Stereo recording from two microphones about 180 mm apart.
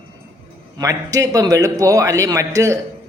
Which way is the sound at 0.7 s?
20° right (ahead or behind).